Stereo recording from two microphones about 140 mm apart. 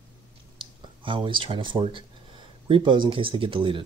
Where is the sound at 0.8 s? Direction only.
35° right (ahead or behind).